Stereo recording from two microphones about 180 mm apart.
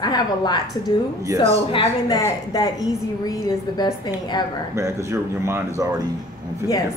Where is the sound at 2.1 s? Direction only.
20° left (ahead or behind).